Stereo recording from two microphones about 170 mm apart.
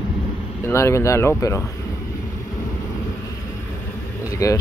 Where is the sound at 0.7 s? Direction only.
15° left (ahead or behind).